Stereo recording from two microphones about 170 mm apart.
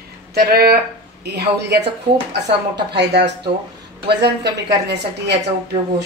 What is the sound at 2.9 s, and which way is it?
A man's voice, 80° right.